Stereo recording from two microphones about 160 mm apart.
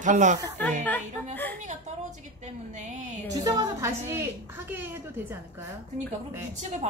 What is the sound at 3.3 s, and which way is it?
Speech, 25° right (ahead or behind).